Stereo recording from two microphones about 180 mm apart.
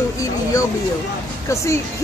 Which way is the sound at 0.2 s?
20° left (ahead or behind).